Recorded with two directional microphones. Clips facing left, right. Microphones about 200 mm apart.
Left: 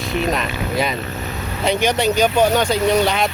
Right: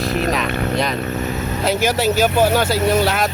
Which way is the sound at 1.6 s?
5° right (ahead or behind).